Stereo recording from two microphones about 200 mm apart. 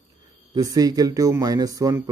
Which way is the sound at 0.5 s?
20° right (ahead or behind).